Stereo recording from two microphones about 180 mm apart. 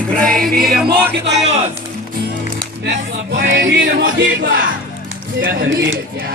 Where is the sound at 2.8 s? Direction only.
70° right (ahead or behind).